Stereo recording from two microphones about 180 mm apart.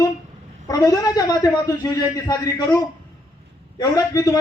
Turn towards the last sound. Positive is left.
turn(degrees=20)  # may be behind; listen again after turning